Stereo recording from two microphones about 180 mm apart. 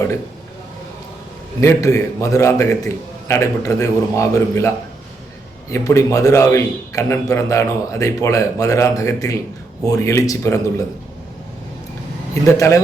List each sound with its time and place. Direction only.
1.6 s a man's voice: 15° left (ahead or behind)
5.7 s a man's voice: 15° left (ahead or behind)
12.3 s a man's voice: 15° left (ahead or behind)